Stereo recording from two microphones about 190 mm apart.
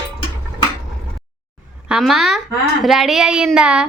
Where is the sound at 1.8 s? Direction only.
5° right (ahead or behind).